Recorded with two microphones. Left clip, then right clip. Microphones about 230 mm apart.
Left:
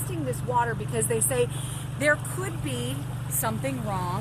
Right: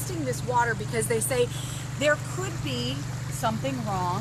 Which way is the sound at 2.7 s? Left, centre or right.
Left.